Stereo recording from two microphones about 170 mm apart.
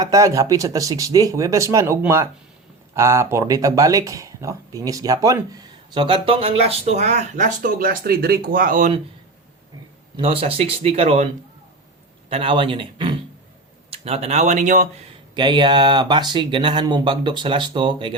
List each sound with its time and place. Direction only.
0.0 s speech: 20° right (ahead or behind)
5.9 s speech: 30° right (ahead or behind); by 8.9 s 55° right (ahead or behind)
10.2 s speech: 35° right (ahead or behind)
12.3 s speech: 30° right (ahead or behind); by 15.0 s 45° right (ahead or behind)
15.4 s speech: 25° right (ahead or behind)